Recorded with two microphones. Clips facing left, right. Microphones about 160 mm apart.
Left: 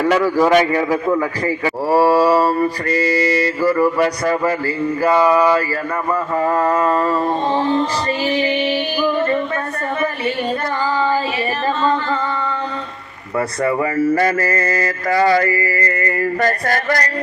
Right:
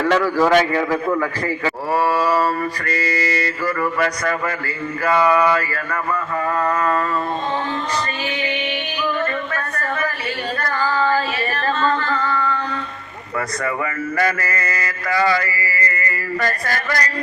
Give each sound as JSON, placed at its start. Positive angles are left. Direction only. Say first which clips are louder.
{"t": 0.0, "sound": "singing", "louder": "left 2 dB", "side_deg": 15}
{"t": 1.9, "sound": "mantra", "louder": "left 6 dB", "side_deg": 30}
{"t": 8.3, "sound": "mantra", "louder": "left 7 dB", "side_deg": 30}
{"t": 10.6, "sound": "singing", "louder": "left 1 dB", "side_deg": 15}
{"t": 13.6, "sound": "mantra", "louder": "left 10 dB", "side_deg": 30}